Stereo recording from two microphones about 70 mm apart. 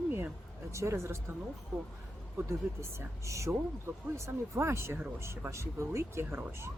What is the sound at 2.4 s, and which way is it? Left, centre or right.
Speech, right.